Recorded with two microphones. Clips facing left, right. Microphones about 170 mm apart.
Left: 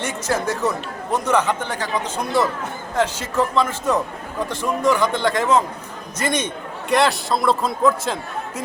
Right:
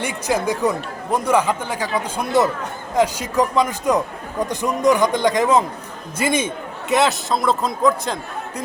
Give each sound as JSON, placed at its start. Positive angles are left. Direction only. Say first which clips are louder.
{"t": 0.0, "sound": "speech", "louder": "right 2 dB", "side_deg": -10}
{"t": 2.9, "sound": "a man's voice", "louder": "right 3 dB", "side_deg": -15}